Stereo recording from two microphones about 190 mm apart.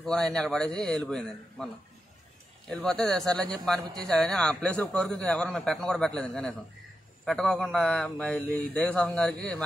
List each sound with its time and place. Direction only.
0.0 s a man's voice: centre (ahead or behind)
2.7 s a man's voice: 5° left (ahead or behind)